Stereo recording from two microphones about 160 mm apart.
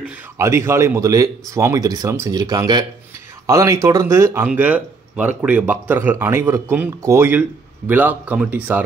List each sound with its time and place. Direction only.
0.4 s speech: 15° right (ahead or behind)